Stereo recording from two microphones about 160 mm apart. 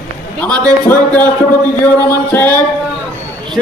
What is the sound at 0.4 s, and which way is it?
A man's voice, 10° left (ahead or behind).